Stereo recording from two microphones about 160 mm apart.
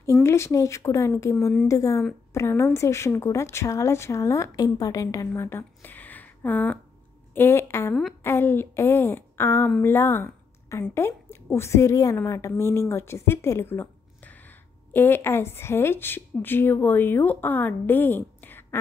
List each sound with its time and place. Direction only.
0.0 s a woman's voice: 15° left (ahead or behind)